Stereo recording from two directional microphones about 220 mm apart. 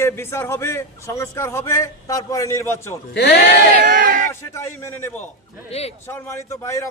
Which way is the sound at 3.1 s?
50° left (ahead or behind).